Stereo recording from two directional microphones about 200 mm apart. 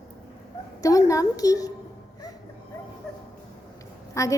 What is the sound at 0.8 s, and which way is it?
Speech, 15° left (ahead or behind).